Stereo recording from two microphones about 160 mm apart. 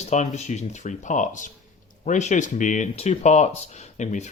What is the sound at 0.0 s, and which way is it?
Speech, 45° left (ahead or behind).